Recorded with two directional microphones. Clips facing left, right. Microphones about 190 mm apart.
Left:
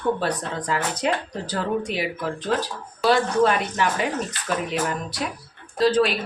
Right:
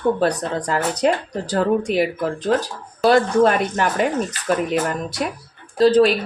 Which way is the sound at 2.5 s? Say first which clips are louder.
Right 5 dB; 45° right (ahead or behind).